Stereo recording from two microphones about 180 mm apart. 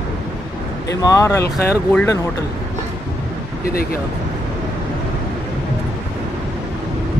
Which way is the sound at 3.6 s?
55° left (ahead or behind).